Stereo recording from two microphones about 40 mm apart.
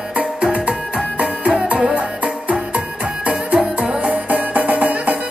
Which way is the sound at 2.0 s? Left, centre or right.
Right.